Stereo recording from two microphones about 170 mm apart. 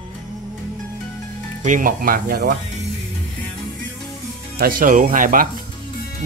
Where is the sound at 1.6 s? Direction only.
50° right (ahead or behind).